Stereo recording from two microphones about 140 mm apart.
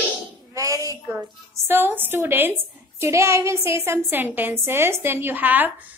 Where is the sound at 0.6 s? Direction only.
25° right (ahead or behind).